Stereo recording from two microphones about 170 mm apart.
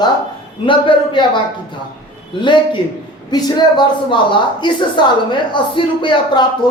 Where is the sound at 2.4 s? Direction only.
30° left (ahead or behind).